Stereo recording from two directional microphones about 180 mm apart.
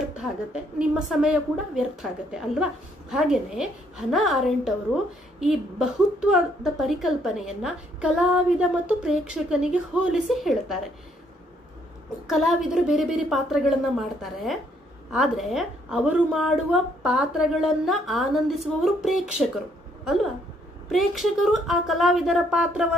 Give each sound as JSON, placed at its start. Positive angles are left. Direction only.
{"t": 0.2, "sound": "a woman's voice", "side_deg": -5}
{"t": 12.3, "sound": "a woman's voice", "side_deg": 0}
{"t": 20.9, "sound": "a woman's voice", "side_deg": 0}